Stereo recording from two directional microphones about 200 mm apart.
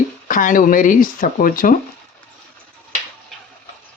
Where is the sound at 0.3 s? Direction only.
40° left (ahead or behind).